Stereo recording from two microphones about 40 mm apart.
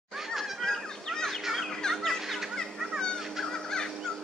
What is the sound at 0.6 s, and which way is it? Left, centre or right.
Fowl, centre.